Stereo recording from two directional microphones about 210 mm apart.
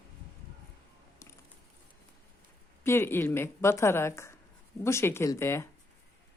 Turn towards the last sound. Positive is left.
turn(degrees=10)  # may be behind; listen again after turning